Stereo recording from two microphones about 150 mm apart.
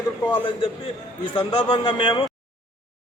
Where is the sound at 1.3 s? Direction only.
35° left (ahead or behind).